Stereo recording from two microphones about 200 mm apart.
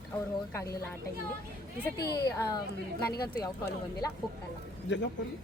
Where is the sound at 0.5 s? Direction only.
15° left (ahead or behind).